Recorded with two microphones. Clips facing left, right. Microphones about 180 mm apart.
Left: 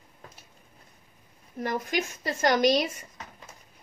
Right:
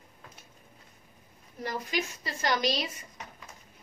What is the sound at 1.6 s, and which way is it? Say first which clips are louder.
A woman's voice: left 4 dB; 50° left (ahead or behind).